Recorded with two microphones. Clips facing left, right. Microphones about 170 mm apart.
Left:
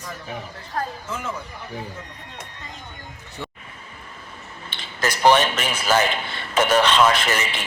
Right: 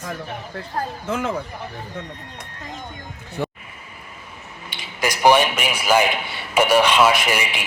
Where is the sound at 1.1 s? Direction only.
65° right (ahead or behind).